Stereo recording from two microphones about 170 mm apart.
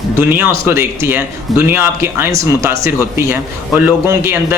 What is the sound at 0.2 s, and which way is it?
Speech, 10° right (ahead or behind).